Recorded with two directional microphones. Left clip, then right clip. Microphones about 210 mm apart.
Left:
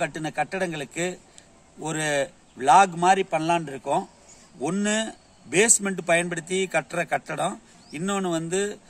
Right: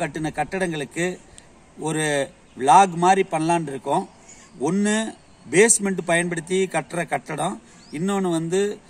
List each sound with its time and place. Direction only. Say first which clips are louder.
0.0 s a man's voice: right 1 dB; centre (ahead or behind)